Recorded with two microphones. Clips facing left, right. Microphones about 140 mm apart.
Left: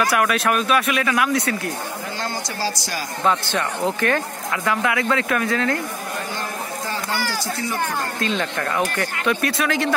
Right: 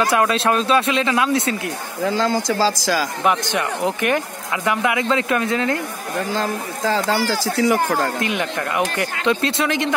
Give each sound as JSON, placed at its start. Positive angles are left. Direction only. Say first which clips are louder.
{"t": 0.0, "sound": "speech", "louder": "right 2 dB", "side_deg": -25}
{"t": 2.6, "sound": "speech", "louder": "right 5 dB", "side_deg": -90}
{"t": 3.3, "sound": "speech", "louder": "even", "side_deg": -15}
{"t": 6.3, "sound": "speech", "louder": "right 5 dB", "side_deg": -90}
{"t": 8.2, "sound": "speech", "louder": "right 1 dB", "side_deg": -15}